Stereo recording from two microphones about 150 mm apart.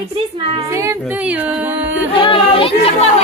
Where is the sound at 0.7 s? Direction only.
20° right (ahead or behind).